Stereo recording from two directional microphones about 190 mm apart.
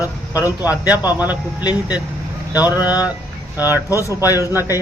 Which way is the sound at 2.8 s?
5° right (ahead or behind).